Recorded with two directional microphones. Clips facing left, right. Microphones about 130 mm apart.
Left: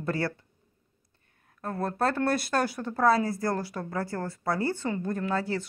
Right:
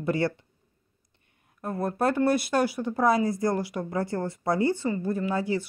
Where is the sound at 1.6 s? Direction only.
15° right (ahead or behind).